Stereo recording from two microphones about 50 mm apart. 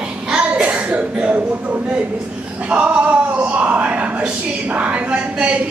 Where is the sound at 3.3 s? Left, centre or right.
Right.